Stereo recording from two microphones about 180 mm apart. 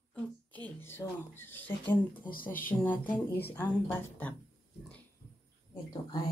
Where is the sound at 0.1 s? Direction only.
10° left (ahead or behind).